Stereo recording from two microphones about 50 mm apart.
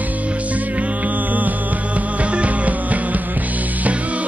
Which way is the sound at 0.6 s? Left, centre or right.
Right.